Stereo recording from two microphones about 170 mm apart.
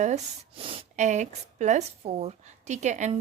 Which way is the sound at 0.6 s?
40° right (ahead or behind).